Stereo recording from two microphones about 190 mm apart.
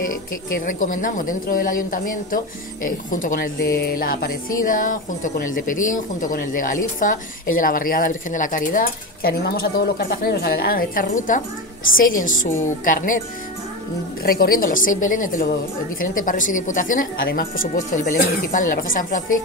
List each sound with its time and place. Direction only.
0.7 s speech: 45° left (ahead or behind)
14.2 s speech: 50° left (ahead or behind)